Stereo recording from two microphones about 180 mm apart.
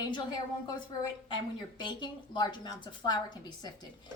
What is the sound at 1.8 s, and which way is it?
A woman's voice, 25° left (ahead or behind).